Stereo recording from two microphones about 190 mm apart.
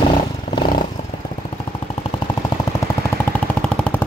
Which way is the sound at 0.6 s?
50° left (ahead or behind).